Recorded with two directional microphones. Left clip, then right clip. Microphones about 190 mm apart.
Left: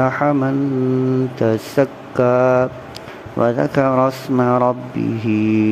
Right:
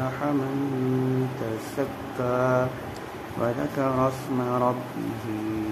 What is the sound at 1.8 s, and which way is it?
Speech, 45° left (ahead or behind).